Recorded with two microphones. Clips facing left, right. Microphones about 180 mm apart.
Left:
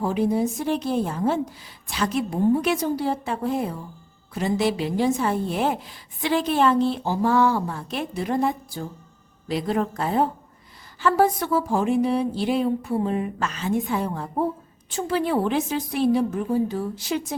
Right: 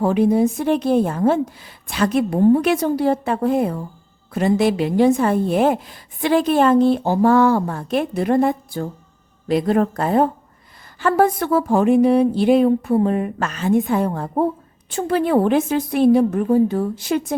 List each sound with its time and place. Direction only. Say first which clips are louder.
0.0 s a woman's voice: right 6 dB; 65° right (ahead or behind)